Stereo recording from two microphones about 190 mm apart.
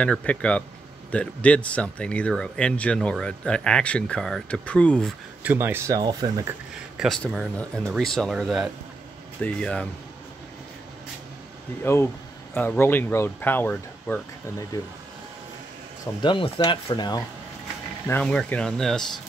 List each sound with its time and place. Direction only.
0.0 s speech: 5° left (ahead or behind)
5.4 s speech: 10° right (ahead or behind)
7.0 s speech: centre (ahead or behind)
11.8 s speech: 15° left (ahead or behind)
16.2 s speech: 25° left (ahead or behind)
18.0 s speech: 10° left (ahead or behind)